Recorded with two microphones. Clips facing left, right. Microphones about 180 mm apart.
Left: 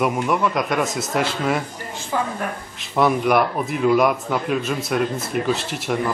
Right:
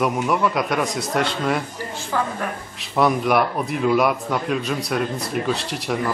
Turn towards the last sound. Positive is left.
turn(degrees=0)  # may be behind; listen again after turning